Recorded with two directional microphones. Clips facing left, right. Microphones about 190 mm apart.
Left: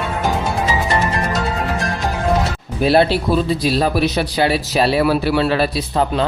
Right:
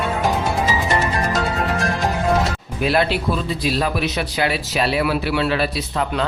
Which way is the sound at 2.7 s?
30° left (ahead or behind).